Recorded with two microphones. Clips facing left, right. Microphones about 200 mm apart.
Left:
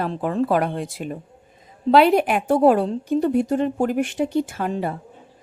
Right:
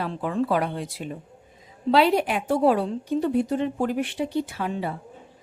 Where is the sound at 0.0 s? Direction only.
45° left (ahead or behind).